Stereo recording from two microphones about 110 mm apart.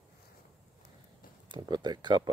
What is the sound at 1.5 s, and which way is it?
Speech, 45° right (ahead or behind).